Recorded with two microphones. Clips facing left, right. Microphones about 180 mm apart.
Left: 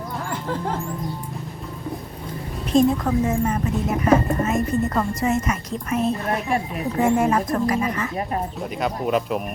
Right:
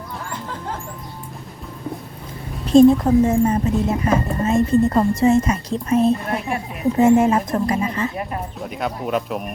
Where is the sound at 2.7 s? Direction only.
30° right (ahead or behind).